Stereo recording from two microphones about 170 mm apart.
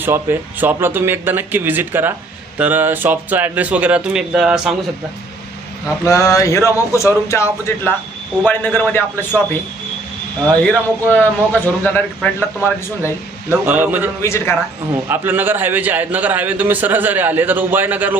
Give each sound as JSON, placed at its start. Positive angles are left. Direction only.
{"t": 0.0, "sound": "a man's voice", "side_deg": -15}
{"t": 6.1, "sound": "a man's voice", "side_deg": 15}
{"t": 10.7, "sound": "a man's voice", "side_deg": 10}
{"t": 13.5, "sound": "a man's voice", "side_deg": -10}
{"t": 14.2, "sound": "a man's voice", "side_deg": 15}
{"t": 15.1, "sound": "a man's voice", "side_deg": -10}